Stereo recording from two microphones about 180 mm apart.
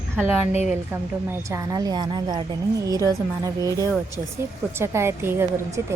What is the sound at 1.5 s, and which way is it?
A woman's voice, 20° right (ahead or behind).